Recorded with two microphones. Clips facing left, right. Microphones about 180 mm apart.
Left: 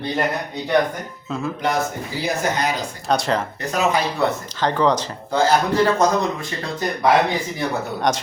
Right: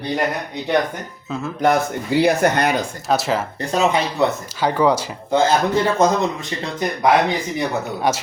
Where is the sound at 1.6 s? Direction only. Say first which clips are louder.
Right 7 dB; 65° right (ahead or behind).